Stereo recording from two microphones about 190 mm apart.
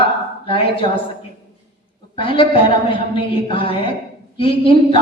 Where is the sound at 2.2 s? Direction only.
30° left (ahead or behind).